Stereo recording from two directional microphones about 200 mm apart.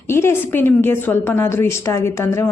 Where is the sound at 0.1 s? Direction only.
10° left (ahead or behind).